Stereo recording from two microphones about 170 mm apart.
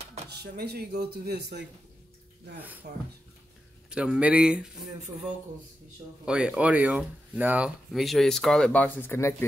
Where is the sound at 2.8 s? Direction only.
75° right (ahead or behind).